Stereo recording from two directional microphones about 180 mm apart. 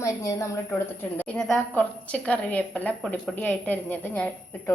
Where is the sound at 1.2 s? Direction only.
5° left (ahead or behind).